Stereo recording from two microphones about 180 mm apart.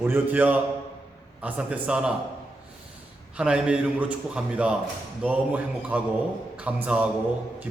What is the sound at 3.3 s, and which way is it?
A man's voice, 5° right (ahead or behind).